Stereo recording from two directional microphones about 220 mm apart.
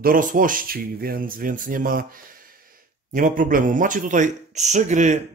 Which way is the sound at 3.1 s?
40° right (ahead or behind).